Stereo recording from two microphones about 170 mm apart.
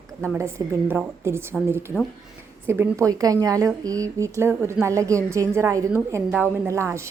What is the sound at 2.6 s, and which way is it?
A woman's voice, 10° right (ahead or behind).